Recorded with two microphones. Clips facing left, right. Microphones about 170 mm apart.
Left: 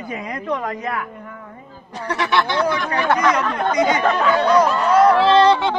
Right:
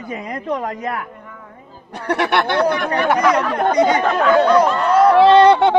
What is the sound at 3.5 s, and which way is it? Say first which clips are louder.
Speech: right 3 dB; 40° right (ahead or behind).